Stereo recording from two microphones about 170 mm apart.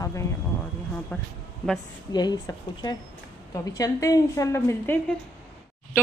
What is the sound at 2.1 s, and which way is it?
A woman's voice, 25° left (ahead or behind).